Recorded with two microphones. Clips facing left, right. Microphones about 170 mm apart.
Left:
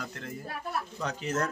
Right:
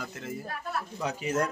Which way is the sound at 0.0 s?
5° right (ahead or behind).